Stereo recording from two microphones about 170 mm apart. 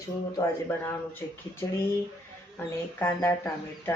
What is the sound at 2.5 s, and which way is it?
Speech, 15° left (ahead or behind).